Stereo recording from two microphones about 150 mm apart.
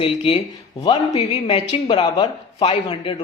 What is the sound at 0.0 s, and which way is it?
A woman's voice, 40° left (ahead or behind).